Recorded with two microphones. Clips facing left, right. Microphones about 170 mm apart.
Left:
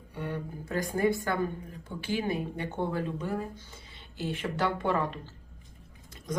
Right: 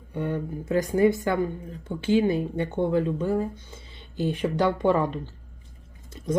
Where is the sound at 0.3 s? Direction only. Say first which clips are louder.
Right 7 dB; 20° right (ahead or behind).